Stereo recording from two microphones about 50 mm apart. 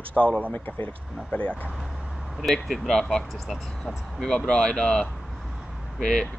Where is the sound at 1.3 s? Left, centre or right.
Left.